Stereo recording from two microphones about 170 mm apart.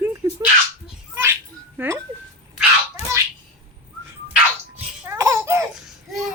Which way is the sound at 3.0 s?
40° left (ahead or behind).